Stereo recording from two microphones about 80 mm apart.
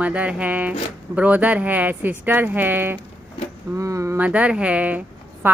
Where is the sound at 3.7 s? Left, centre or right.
Right.